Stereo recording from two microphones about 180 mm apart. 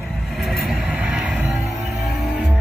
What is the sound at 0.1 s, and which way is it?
Vehicle, centre (ahead or behind).